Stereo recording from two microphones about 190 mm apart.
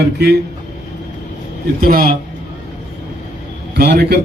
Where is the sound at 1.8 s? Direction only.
50° right (ahead or behind).